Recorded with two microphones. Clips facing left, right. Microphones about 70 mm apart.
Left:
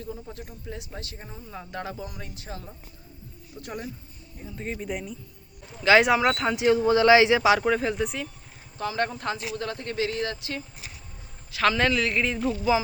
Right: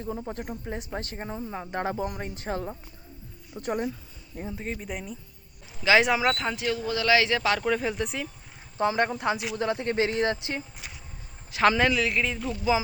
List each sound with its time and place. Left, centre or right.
0.1 s a woman's voice: right
1.5 s speech: right
3.5 s speech: right
4.5 s speech: centre
6.6 s a man's voice: left; by 8.3 s centre
9.0 s a man's voice: centre
11.8 s speech: centre